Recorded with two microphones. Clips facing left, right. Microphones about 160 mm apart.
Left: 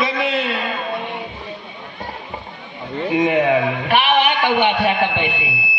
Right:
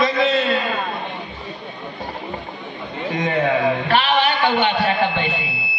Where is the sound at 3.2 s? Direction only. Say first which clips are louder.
Left 2 dB; 15° left (ahead or behind).